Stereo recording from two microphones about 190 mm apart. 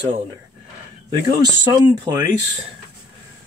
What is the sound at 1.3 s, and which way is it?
Speech, 25° right (ahead or behind).